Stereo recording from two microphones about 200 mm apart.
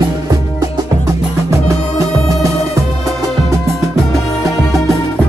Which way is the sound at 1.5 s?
15° right (ahead or behind).